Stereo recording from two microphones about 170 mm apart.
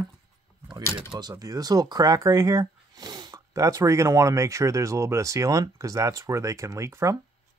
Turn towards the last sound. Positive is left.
turn(degrees=-15)  # may be behind; listen again after turning